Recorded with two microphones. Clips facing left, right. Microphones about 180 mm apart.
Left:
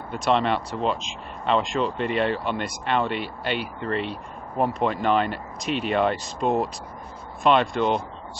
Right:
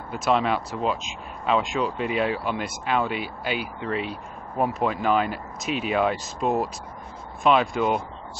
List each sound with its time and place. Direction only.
0.1 s speech: centre (ahead or behind)